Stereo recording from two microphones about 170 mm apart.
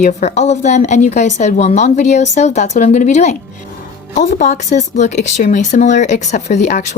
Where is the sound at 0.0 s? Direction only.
40° left (ahead or behind).